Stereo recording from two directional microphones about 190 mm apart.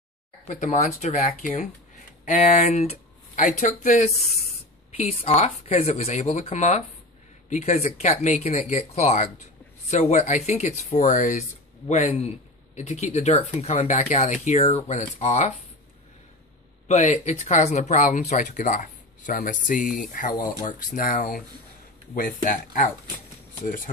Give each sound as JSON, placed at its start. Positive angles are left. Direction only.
{"t": 0.6, "sound": "speech", "side_deg": 40}
{"t": 16.8, "sound": "speech", "side_deg": 35}